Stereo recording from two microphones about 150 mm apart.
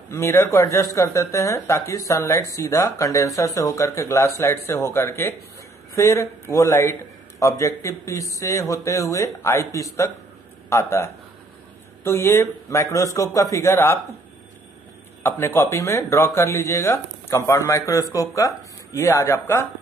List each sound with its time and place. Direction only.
0.1 s speech: 15° left (ahead or behind)
15.2 s speech: 15° left (ahead or behind)